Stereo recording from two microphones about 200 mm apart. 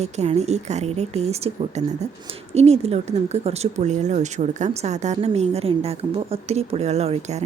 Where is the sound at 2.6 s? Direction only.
30° right (ahead or behind).